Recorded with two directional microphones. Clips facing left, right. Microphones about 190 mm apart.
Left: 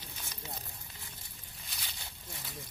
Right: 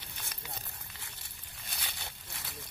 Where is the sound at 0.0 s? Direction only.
65° right (ahead or behind).